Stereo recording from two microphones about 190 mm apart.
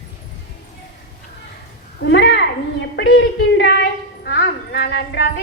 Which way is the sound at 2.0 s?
70° left (ahead or behind).